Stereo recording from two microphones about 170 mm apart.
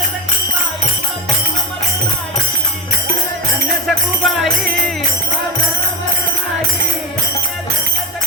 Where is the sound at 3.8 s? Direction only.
Centre (ahead or behind).